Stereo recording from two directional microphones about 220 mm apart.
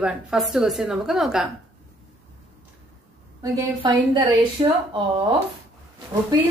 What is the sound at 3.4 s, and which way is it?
A woman's voice, 20° right (ahead or behind).